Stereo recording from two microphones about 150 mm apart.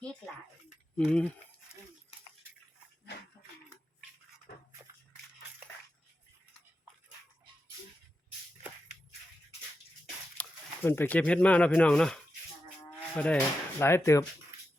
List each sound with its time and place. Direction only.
0.9 s speech: 5° left (ahead or behind)
10.4 s a sound: 10° left (ahead or behind)
10.8 s speech: 15° left (ahead or behind)